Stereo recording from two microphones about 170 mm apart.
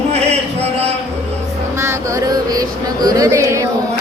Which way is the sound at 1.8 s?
20° right (ahead or behind).